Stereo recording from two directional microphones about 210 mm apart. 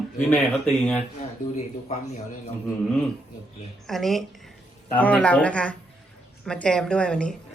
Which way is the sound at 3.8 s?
Centre (ahead or behind).